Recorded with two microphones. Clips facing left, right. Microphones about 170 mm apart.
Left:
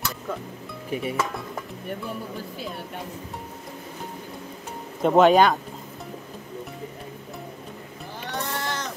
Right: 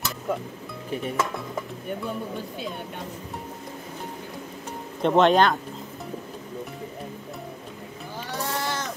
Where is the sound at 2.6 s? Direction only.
5° left (ahead or behind).